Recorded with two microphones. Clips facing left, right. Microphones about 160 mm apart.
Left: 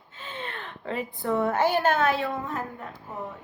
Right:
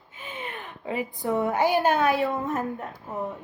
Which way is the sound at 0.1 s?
15° right (ahead or behind).